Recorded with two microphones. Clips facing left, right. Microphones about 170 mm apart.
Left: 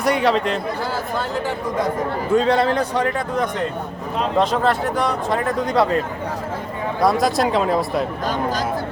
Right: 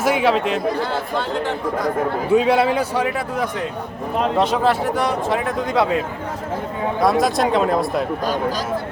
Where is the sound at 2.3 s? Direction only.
10° right (ahead or behind).